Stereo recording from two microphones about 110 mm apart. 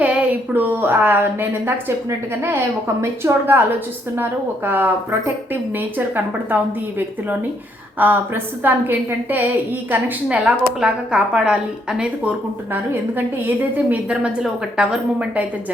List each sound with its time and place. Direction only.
0.0 s a woman's voice: 15° right (ahead or behind)
8.0 s a woman's voice: 15° right (ahead or behind)